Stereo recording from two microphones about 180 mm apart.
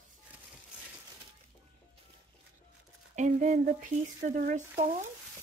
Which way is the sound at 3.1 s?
45° right (ahead or behind).